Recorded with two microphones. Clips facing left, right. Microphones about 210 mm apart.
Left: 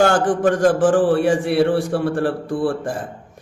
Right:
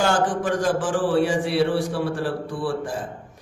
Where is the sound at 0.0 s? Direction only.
50° left (ahead or behind).